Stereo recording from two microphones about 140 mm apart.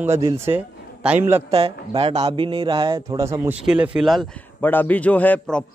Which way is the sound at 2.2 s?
35° right (ahead or behind).